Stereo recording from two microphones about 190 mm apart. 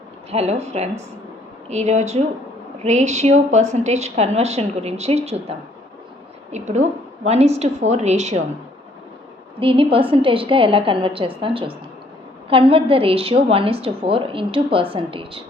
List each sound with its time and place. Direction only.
0.3 s a woman's voice: 35° right (ahead or behind)
9.6 s a woman's voice: 30° right (ahead or behind)